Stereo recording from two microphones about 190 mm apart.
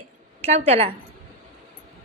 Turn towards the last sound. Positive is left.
turn(degrees=-35)  # may be behind; listen again after turning